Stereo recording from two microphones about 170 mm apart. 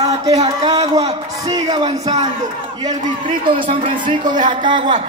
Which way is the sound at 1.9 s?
40° right (ahead or behind).